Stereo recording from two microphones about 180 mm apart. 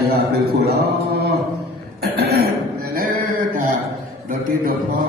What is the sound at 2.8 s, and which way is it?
Music, 55° right (ahead or behind).